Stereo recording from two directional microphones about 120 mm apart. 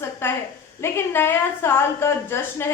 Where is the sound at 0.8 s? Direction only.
20° left (ahead or behind).